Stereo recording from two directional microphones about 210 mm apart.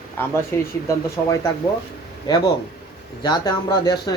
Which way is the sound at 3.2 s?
20° left (ahead or behind).